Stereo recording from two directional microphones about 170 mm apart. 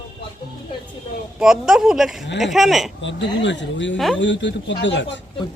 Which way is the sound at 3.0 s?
90° left.